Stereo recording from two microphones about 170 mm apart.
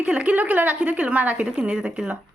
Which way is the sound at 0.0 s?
10° right (ahead or behind).